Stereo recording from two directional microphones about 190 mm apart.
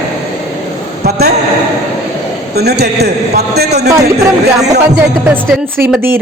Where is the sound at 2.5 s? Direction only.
60° right (ahead or behind).